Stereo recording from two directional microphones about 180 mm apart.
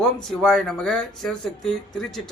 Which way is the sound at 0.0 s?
5° left (ahead or behind).